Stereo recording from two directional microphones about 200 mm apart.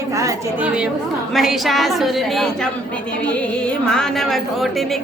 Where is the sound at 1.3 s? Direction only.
Centre (ahead or behind).